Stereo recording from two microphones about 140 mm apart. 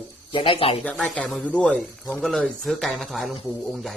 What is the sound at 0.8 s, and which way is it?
A man's voice, 10° left (ahead or behind).